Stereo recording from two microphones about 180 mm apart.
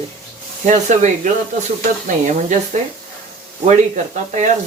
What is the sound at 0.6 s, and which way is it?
Speech, 40° right (ahead or behind).